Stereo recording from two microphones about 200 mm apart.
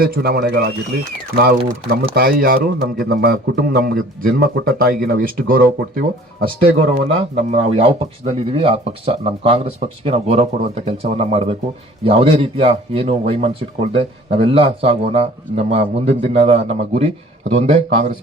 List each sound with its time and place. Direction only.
0.0 s a man's voice: 50° right (ahead or behind)
6.4 s speech: 30° right (ahead or behind)